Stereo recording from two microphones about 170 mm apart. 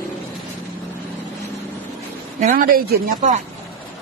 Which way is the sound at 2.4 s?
55° right (ahead or behind).